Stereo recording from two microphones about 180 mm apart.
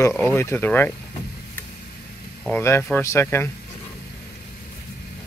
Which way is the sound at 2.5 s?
15° left (ahead or behind).